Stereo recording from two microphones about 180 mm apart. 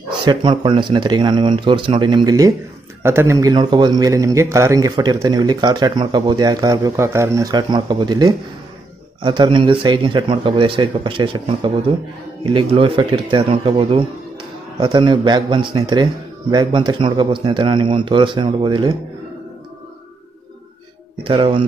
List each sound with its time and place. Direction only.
0.2 s a man's voice: 25° right (ahead or behind)
21.2 s a man's voice: 30° right (ahead or behind)